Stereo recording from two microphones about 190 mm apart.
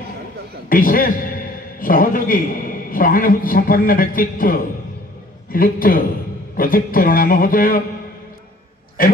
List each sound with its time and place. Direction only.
0.7 s a man's voice: 45° left (ahead or behind)
9.0 s a man's voice: 50° left (ahead or behind)